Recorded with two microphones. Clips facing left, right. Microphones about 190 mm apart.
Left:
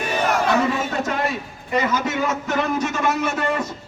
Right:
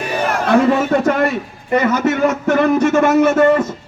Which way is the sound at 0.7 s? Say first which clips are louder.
Right 9 dB; 60° right (ahead or behind).